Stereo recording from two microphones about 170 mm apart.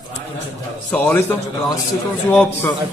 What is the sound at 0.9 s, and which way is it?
Speech, 10° left (ahead or behind).